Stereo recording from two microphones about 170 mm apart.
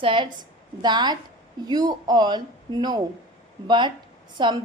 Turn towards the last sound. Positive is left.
turn(degrees=-25)  # may be behind; listen again after turning